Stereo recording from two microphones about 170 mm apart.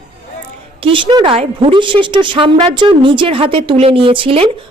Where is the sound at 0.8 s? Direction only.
30° right (ahead or behind).